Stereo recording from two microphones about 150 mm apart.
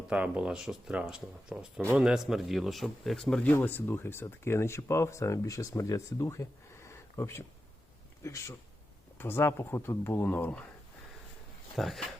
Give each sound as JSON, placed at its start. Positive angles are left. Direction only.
{"t": 0.1, "sound": "speech", "side_deg": -10}
{"t": 11.8, "sound": "speech", "side_deg": 0}